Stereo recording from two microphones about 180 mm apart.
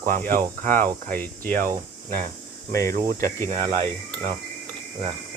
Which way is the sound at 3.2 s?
40° right (ahead or behind).